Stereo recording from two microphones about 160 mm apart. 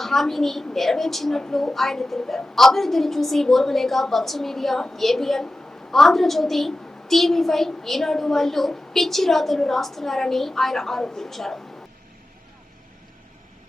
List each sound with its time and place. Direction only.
0.0 s a woman's voice: centre (ahead or behind)